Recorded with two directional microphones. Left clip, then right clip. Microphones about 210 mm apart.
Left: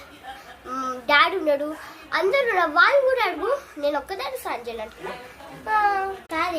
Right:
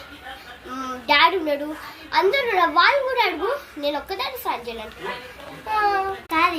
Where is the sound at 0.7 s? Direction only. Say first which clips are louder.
Even; 20° left (ahead or behind).